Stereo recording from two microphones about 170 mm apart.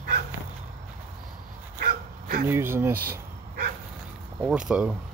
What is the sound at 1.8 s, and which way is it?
Dog, 60° right (ahead or behind).